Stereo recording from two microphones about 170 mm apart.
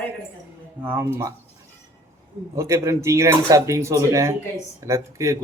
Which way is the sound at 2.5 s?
15° right (ahead or behind).